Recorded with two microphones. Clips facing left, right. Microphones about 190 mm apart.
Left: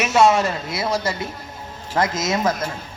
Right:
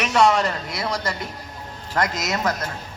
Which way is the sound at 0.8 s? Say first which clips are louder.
Left 4 dB; 25° left (ahead or behind).